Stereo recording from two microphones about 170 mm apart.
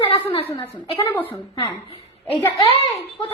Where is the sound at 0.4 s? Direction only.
15° left (ahead or behind).